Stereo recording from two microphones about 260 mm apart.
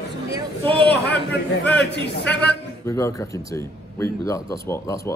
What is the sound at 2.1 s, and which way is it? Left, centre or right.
Speech, left.